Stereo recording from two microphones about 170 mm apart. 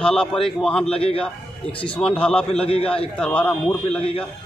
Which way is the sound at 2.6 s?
35° left (ahead or behind).